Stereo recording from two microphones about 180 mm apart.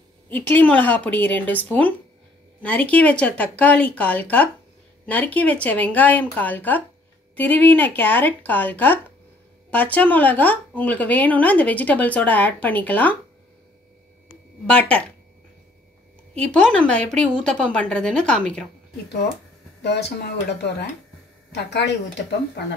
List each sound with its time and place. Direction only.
0.3 s a woman's voice: 10° left (ahead or behind)
14.7 s a woman's voice: 5° left (ahead or behind)
16.3 s speech: 5° left (ahead or behind)
19.8 s speech: 70° left (ahead or behind)